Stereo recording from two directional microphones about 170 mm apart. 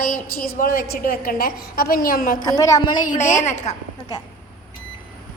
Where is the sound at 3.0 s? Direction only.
50° left (ahead or behind).